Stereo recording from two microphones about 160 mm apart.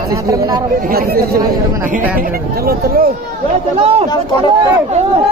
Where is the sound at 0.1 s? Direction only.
20° right (ahead or behind).